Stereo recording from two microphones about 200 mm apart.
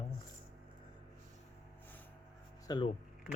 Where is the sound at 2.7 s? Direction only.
25° left (ahead or behind).